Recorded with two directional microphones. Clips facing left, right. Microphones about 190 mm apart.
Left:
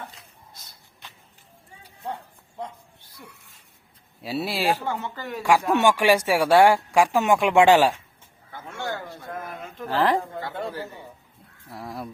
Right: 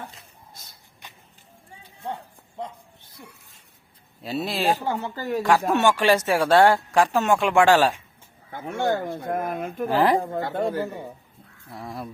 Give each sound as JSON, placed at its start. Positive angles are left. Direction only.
{"t": 4.2, "sound": "speech", "side_deg": 5}
{"t": 4.9, "sound": "speech", "side_deg": -35}
{"t": 5.4, "sound": "speech", "side_deg": 10}
{"t": 8.8, "sound": "speech", "side_deg": -50}
{"t": 9.6, "sound": "speech", "side_deg": -15}
{"t": 10.2, "sound": "speech", "side_deg": -45}
{"t": 11.7, "sound": "speech", "side_deg": 0}